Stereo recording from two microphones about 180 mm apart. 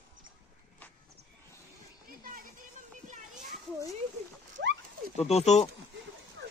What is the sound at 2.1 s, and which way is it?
Children playing, 50° right (ahead or behind).